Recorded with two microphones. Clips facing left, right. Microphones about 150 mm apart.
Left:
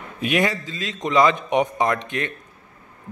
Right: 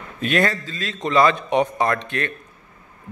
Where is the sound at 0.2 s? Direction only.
15° left (ahead or behind).